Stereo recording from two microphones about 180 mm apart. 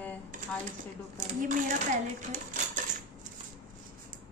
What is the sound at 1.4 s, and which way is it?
Speech, 50° right (ahead or behind).